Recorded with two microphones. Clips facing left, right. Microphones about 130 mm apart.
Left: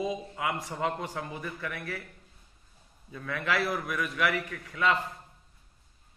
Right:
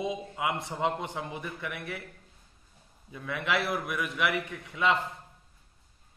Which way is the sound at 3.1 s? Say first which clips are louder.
Even; 10° right (ahead or behind).